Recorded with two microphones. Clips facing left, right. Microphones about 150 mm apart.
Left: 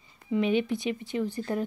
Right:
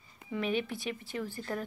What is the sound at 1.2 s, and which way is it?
Speech, 20° left (ahead or behind).